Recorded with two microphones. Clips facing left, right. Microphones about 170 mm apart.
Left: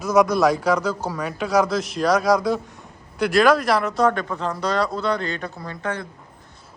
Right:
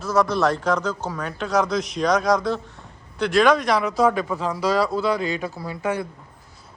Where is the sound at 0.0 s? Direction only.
15° left (ahead or behind); by 6.1 s 10° right (ahead or behind).